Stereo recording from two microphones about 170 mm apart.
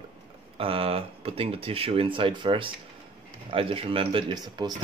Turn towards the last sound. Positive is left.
turn(degrees=-25)  # may be behind; listen again after turning